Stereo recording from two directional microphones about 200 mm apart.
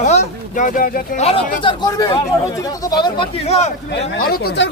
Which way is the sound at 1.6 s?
20° left (ahead or behind).